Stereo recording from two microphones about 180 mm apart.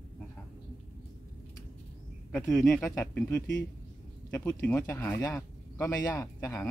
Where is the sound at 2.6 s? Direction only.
15° left (ahead or behind).